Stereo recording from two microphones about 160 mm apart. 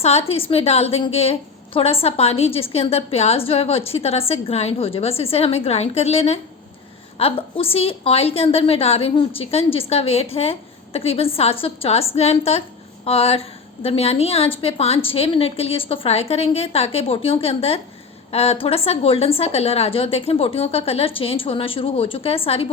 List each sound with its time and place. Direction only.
0.0 s a woman's voice: 40° left (ahead or behind)